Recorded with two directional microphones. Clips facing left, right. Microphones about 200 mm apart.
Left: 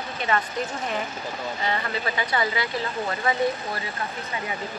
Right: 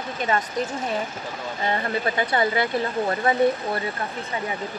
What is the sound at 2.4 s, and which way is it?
Speech, 55° right (ahead or behind).